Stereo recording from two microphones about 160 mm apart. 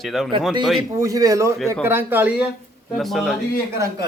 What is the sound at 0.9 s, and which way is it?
A man's voice, 20° right (ahead or behind).